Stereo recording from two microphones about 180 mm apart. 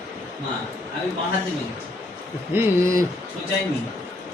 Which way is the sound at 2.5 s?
15° right (ahead or behind).